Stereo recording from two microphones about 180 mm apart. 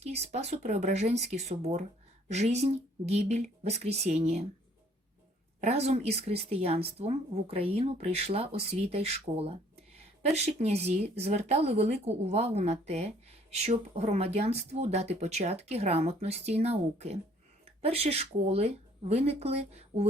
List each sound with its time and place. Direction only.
0.0 s speech: 35° right (ahead or behind)
5.5 s speech: 35° right (ahead or behind)